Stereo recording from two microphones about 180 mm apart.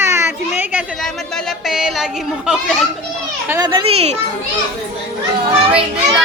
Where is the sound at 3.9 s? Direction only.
35° right (ahead or behind).